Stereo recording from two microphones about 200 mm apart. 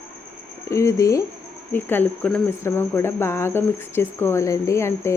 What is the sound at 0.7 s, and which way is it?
Speech, 15° left (ahead or behind).